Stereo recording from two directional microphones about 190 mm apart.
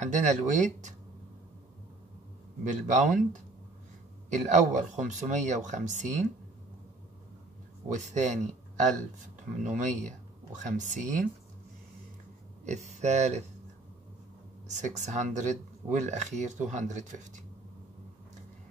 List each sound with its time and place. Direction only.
0.0 s speech: 40° right (ahead or behind)
2.6 s speech: 40° right (ahead or behind)
4.3 s speech: 40° right (ahead or behind)
7.9 s speech: 40° right (ahead or behind)
9.6 s speech: 40° right (ahead or behind)
12.6 s speech: 40° right (ahead or behind)
14.7 s speech: 40° right (ahead or behind)